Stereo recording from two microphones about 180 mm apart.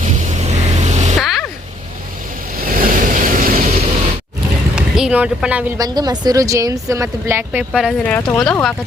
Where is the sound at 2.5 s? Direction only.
50° right (ahead or behind).